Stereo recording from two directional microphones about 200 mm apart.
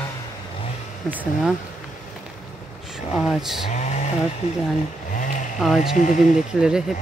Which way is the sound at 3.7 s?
35° left (ahead or behind).